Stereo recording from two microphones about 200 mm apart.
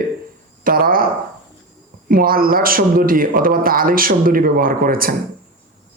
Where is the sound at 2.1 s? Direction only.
45° right (ahead or behind).